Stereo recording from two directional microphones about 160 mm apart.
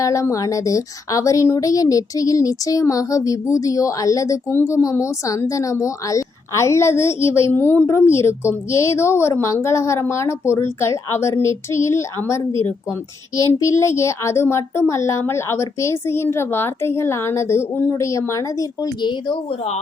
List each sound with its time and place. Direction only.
0.0 s a woman's voice: 20° left (ahead or behind)